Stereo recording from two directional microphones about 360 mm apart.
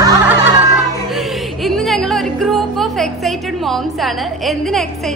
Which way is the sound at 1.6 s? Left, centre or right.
Centre.